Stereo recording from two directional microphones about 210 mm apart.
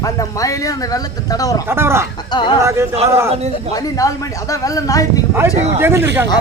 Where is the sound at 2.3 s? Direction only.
20° left (ahead or behind).